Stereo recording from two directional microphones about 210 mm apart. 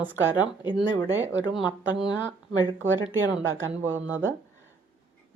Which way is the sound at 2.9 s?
65° right (ahead or behind).